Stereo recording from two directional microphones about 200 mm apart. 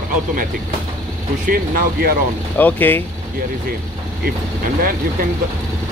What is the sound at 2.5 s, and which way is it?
Speech, 10° left (ahead or behind).